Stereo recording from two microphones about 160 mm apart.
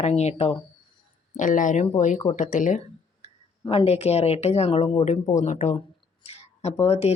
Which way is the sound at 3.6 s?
35° left (ahead or behind).